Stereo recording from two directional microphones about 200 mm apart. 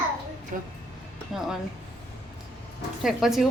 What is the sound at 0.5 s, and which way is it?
Speech, 40° right (ahead or behind).